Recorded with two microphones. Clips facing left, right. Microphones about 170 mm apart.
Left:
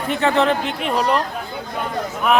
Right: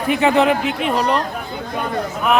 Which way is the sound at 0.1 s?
15° right (ahead or behind).